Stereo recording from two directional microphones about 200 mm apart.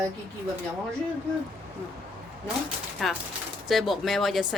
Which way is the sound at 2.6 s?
Centre (ahead or behind).